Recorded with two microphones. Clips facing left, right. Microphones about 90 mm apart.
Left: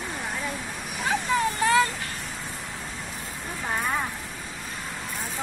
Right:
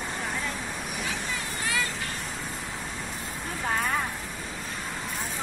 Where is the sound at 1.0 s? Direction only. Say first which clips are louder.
Left 13 dB; 45° left (ahead or behind).